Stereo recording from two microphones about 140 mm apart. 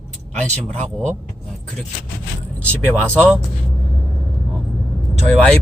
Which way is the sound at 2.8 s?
10° left (ahead or behind).